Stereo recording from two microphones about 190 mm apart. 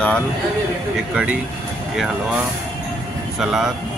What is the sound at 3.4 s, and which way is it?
Speech, centre (ahead or behind).